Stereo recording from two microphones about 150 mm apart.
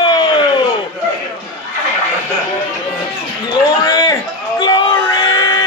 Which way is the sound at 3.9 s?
25° left (ahead or behind).